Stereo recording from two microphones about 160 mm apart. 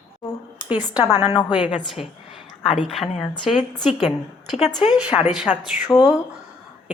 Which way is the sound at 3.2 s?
30° left (ahead or behind).